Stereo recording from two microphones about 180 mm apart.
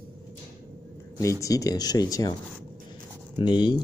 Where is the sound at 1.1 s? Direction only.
15° left (ahead or behind).